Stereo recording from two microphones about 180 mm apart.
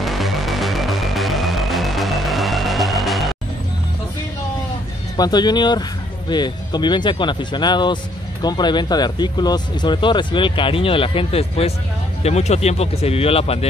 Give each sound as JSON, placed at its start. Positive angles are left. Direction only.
{"t": 0.0, "sound": "music", "side_deg": 0}
{"t": 5.1, "sound": "speech", "side_deg": 25}